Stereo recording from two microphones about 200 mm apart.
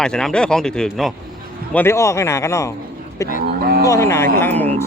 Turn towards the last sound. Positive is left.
turn(degrees=10)  # may be behind; listen again after turning